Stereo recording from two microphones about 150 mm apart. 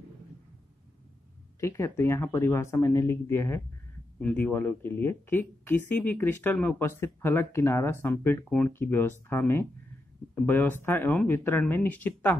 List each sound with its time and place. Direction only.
1.6 s speech: 20° left (ahead or behind)